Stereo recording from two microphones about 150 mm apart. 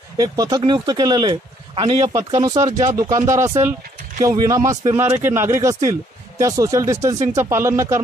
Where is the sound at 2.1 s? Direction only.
25° right (ahead or behind).